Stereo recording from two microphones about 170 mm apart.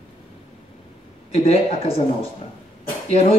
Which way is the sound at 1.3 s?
35° left (ahead or behind).